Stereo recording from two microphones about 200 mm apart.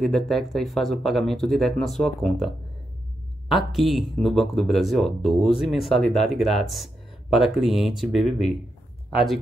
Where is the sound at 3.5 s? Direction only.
Centre (ahead or behind).